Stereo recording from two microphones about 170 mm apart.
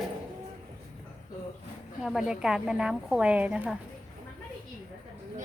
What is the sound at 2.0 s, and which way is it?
Speech, 5° right (ahead or behind).